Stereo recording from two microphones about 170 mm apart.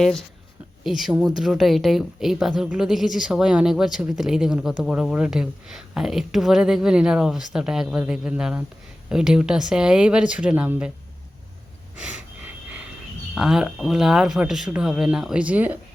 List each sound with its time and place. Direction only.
0.0 s a woman's voice: centre (ahead or behind)
11.9 s a sound: 5° right (ahead or behind)
13.3 s a woman's voice: centre (ahead or behind)